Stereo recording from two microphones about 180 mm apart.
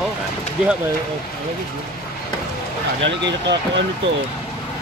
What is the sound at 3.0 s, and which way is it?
Speech, 75° right (ahead or behind).